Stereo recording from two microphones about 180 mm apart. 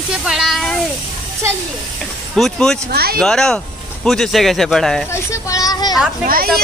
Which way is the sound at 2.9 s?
60° right (ahead or behind).